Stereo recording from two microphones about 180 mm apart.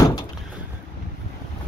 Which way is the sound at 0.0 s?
25° left (ahead or behind).